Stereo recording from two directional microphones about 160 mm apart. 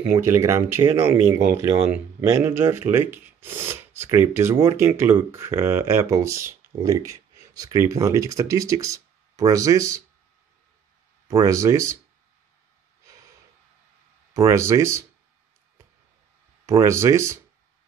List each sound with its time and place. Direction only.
0.0 s speech: 15° right (ahead or behind)
11.2 s speech: 20° right (ahead or behind)
14.3 s speech: 20° right (ahead or behind)
16.6 s speech: 20° right (ahead or behind)